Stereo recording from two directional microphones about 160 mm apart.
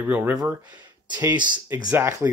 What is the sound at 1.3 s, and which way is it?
Speech, 30° right (ahead or behind).